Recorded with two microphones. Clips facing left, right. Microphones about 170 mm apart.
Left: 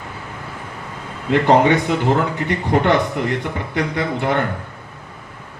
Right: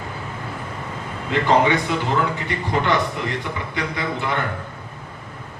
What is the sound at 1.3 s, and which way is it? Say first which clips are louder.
A man's voice: left 4 dB; 55° left (ahead or behind).